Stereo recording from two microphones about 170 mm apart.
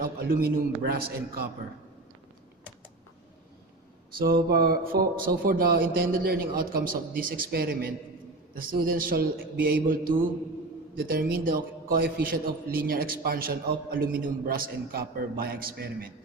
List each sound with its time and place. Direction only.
0.0 s a man's voice: 60° right (ahead or behind)
4.2 s a man's voice: 60° right (ahead or behind)